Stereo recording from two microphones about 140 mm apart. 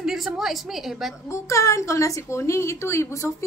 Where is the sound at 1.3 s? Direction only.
20° left (ahead or behind).